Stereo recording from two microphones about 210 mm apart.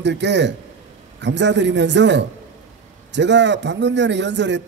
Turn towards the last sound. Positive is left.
turn(degrees=-60)  # may be behind; listen again after turning